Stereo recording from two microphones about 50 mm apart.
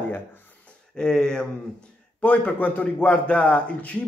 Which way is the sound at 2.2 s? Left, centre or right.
Left.